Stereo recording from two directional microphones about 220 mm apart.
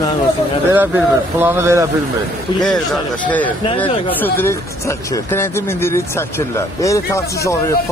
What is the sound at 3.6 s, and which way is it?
Speech, 25° left (ahead or behind).